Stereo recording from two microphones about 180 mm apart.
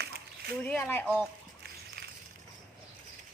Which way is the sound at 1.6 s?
65° right (ahead or behind).